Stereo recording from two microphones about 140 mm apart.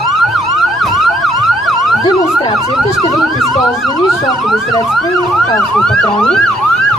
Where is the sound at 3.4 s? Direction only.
Centre (ahead or behind).